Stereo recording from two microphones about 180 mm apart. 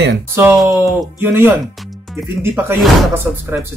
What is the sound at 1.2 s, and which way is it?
Speech, 10° right (ahead or behind).